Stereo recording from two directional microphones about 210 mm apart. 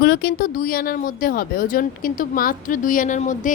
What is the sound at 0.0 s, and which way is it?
Speech, 50° left (ahead or behind).